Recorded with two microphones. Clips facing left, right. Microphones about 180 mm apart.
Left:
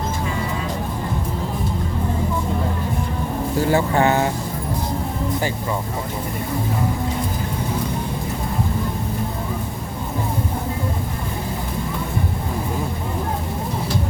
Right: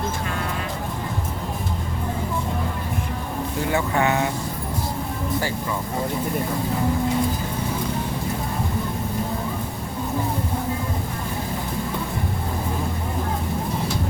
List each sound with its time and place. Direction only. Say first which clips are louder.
3.7 s speech: left 4 dB; 35° left (ahead or behind)